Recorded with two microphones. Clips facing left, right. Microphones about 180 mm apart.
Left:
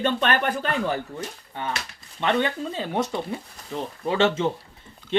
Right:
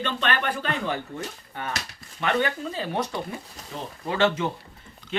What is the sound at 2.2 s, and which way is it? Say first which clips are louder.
Speech: left 2 dB; 25° left (ahead or behind).